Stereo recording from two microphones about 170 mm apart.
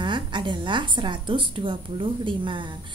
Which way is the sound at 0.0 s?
30° right (ahead or behind).